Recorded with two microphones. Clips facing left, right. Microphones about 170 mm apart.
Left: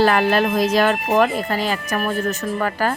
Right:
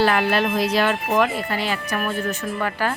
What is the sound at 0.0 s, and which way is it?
Speech, 45° left (ahead or behind).